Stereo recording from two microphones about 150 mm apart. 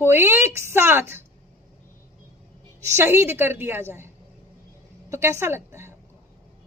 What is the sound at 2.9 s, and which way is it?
A woman's voice, 15° right (ahead or behind).